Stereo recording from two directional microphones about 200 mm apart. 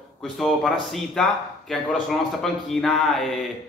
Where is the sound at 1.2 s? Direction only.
5° left (ahead or behind).